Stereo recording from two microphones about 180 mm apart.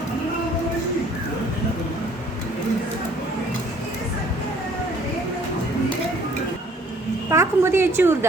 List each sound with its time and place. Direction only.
7.3 s a woman's voice: 15° right (ahead or behind)